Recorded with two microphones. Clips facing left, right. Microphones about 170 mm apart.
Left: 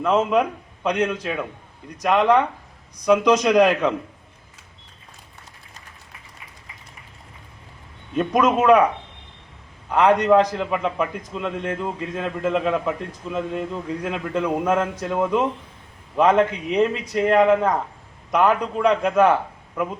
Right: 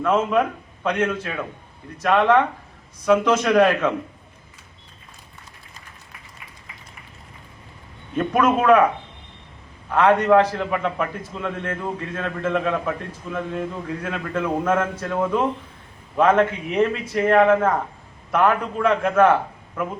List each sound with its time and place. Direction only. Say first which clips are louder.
0.0 s a man's voice: left 1 dB; 15° left (ahead or behind)
8.1 s a man's voice: even; 15° left (ahead or behind)
9.9 s a man's voice: even; 15° left (ahead or behind)